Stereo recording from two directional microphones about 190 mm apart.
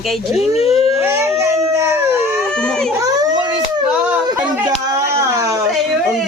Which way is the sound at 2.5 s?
5° left (ahead or behind).